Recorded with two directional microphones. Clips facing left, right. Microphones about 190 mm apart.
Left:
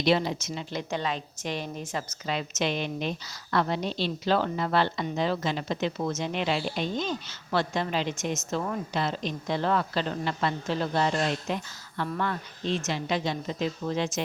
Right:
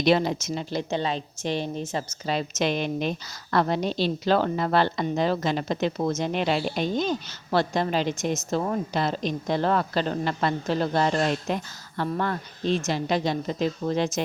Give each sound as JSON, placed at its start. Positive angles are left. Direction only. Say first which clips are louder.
{"t": 0.0, "sound": "a woman's voice", "louder": "right 3 dB", "side_deg": -50}